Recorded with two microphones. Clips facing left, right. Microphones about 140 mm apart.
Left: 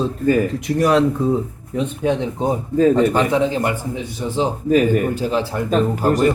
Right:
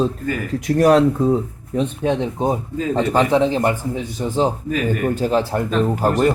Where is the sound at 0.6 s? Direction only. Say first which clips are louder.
Right 5 dB; 45° right (ahead or behind).